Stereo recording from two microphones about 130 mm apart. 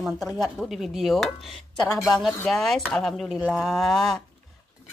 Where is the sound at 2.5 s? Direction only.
Centre (ahead or behind).